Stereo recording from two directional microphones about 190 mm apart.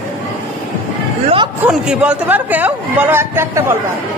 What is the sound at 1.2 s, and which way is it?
Speech, 25° right (ahead or behind).